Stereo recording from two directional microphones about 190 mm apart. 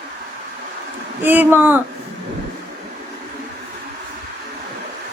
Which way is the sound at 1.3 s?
10° right (ahead or behind).